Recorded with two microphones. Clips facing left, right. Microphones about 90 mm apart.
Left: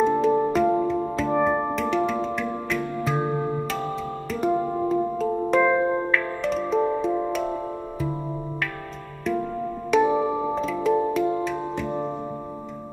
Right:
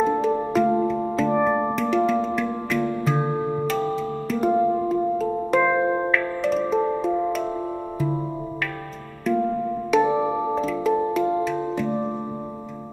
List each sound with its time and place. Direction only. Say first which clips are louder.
0.0 s music: left 1 dB; centre (ahead or behind)
5.8 s music: right 1 dB; 15° right (ahead or behind)
6.1 s music: right 2 dB; centre (ahead or behind)
10.0 s music: even; 25° right (ahead or behind)
10.5 s music: right 1 dB; centre (ahead or behind)